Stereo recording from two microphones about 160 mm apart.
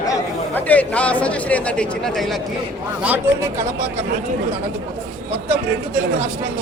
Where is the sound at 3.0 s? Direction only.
15° right (ahead or behind).